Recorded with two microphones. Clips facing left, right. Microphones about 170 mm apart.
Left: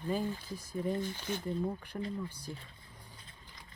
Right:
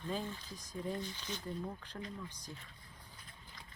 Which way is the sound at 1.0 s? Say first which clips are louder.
Left 7 dB; 50° left (ahead or behind).